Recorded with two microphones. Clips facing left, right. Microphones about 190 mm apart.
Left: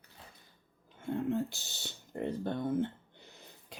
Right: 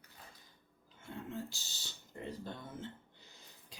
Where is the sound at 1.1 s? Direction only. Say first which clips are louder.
Left 11 dB; 55° left (ahead or behind).